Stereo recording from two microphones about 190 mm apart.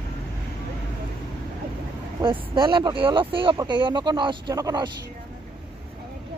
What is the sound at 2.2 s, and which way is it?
Speech, 25° right (ahead or behind).